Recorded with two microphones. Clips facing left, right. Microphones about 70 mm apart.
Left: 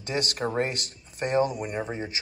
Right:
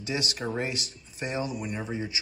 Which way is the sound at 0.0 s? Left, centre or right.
Left.